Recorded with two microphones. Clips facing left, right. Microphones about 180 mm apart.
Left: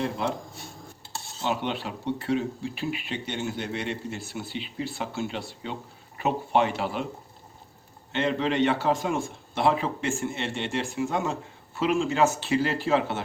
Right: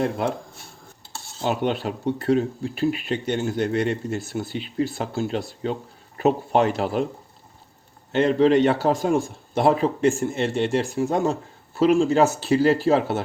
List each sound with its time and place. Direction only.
1.5 s a man's voice: 45° right (ahead or behind)
8.1 s a man's voice: 40° right (ahead or behind)